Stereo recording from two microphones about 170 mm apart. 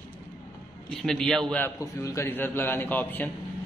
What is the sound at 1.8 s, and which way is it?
A man's voice, 20° left (ahead or behind).